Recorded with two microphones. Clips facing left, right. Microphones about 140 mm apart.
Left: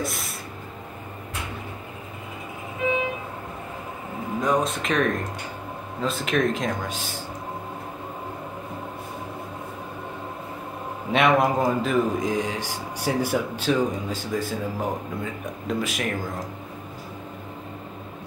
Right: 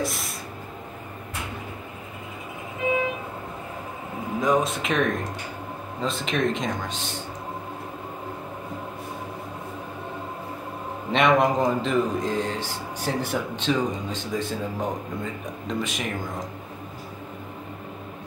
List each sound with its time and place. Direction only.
0.0 s a sound: centre (ahead or behind)
4.4 s a man's voice: centre (ahead or behind)
11.1 s a man's voice: 5° left (ahead or behind)